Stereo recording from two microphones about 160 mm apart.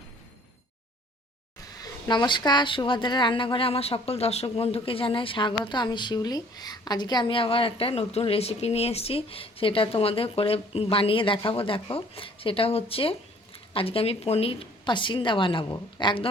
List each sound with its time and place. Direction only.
1.8 s a woman's voice: 30° left (ahead or behind)